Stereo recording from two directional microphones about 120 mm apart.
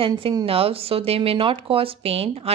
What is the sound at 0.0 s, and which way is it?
Speech, 50° right (ahead or behind).